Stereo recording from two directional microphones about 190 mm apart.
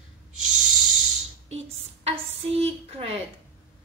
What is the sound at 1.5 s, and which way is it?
A woman's voice, 30° right (ahead or behind).